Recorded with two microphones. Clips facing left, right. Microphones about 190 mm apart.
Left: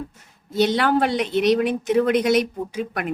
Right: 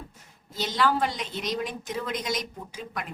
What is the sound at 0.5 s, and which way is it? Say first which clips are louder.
A woman's voice: left 7 dB; 65° left (ahead or behind).